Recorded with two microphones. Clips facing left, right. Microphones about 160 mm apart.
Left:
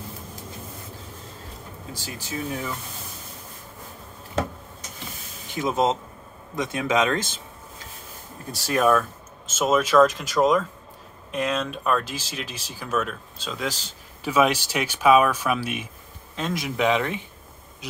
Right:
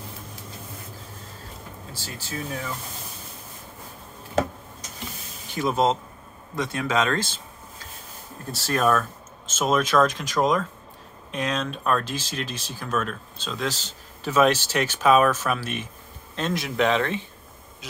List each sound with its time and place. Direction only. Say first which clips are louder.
2.0 s speech: even; 15° left (ahead or behind)
5.5 s speech: even; 20° left (ahead or behind)
8.5 s speech: left 2 dB; 15° left (ahead or behind)